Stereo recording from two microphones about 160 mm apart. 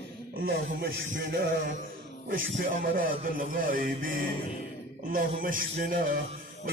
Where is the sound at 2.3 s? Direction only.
60° right (ahead or behind).